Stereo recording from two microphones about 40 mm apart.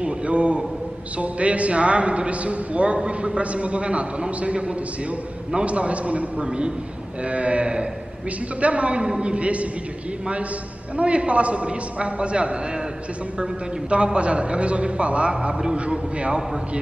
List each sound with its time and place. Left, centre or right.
0.0 s a man's voice: right
11.0 s a man's voice: right